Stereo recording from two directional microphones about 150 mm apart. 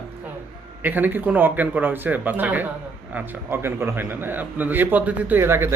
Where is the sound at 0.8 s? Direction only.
10° right (ahead or behind).